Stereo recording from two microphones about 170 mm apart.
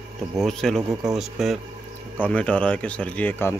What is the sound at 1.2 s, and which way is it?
Speech, centre (ahead or behind).